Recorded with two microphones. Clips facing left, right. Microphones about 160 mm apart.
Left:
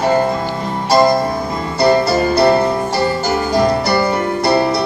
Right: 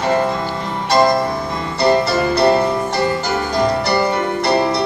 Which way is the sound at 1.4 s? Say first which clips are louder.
Left 2 dB; 40° left (ahead or behind).